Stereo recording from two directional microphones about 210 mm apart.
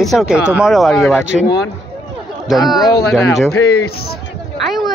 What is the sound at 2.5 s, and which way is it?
Speech, centre (ahead or behind).